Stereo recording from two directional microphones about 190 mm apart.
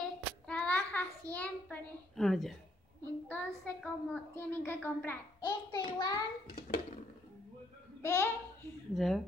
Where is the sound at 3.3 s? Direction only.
10° left (ahead or behind).